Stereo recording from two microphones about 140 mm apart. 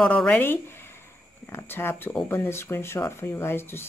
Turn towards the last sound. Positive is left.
turn(degrees=15)  # may be behind; listen again after turning